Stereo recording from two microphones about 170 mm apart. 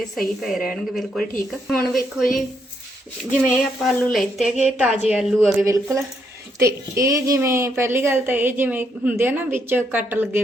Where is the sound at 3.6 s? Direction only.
Centre (ahead or behind).